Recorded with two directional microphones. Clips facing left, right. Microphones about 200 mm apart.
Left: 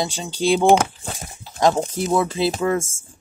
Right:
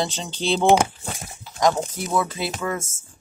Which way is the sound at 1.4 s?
25° left (ahead or behind).